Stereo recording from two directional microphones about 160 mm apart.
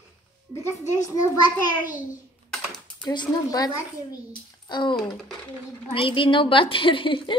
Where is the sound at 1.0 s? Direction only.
25° left (ahead or behind).